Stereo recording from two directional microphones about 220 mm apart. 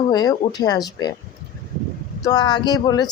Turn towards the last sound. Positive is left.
turn(degrees=15)  # may be behind; listen again after turning